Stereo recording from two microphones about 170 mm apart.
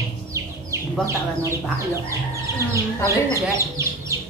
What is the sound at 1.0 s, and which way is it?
Speech, 15° right (ahead or behind).